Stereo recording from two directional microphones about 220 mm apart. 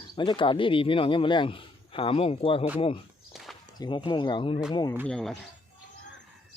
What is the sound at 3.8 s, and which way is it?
Speech, 20° left (ahead or behind).